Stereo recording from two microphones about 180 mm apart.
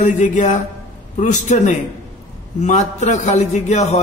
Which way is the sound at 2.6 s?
40° left (ahead or behind).